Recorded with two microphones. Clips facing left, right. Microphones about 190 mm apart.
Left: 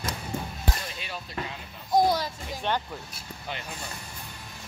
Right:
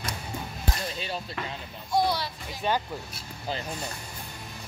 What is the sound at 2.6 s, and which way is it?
Speech, 5° right (ahead or behind).